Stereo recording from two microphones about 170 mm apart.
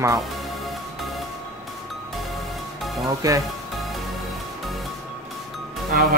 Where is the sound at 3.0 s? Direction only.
20° right (ahead or behind).